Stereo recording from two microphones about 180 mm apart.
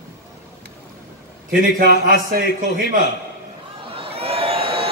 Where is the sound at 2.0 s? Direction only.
50° right (ahead or behind).